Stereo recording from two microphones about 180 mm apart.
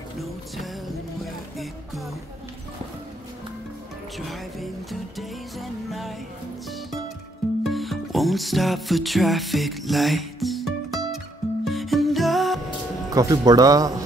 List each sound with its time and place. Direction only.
0.2 s music: centre (ahead or behind)
5.6 s music: centre (ahead or behind)
7.6 s music: centre (ahead or behind)
13.1 s speech: 20° right (ahead or behind)